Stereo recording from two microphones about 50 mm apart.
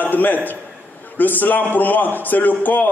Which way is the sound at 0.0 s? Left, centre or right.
Left.